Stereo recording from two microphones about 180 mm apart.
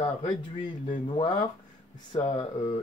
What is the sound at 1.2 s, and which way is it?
Speech, 25° left (ahead or behind).